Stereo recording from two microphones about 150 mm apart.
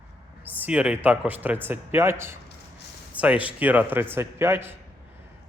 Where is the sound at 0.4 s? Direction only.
10° right (ahead or behind).